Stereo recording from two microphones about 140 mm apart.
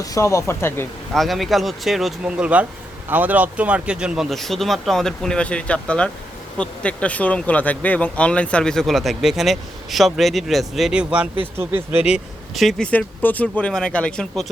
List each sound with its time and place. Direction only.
0.0 s speech: 25° left (ahead or behind)
1.1 s speech: centre (ahead or behind)